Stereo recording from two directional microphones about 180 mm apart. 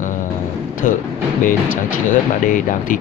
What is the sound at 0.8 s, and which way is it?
Speech, 50° left (ahead or behind).